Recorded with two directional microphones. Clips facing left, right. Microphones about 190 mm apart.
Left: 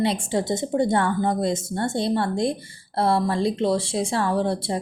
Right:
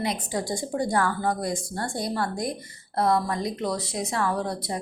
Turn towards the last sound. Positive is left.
turn(degrees=30)  # may be behind; listen again after turning